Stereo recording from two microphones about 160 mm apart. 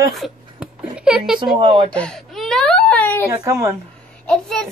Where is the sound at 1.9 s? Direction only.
5° left (ahead or behind).